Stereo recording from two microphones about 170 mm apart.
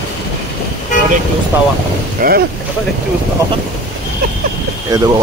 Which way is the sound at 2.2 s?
55° right (ahead or behind).